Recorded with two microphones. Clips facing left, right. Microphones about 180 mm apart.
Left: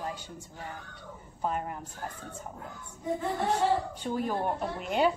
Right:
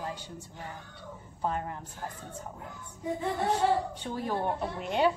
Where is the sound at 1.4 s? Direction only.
10° left (ahead or behind).